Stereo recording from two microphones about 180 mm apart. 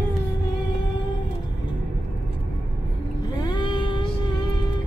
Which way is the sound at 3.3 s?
20° left (ahead or behind).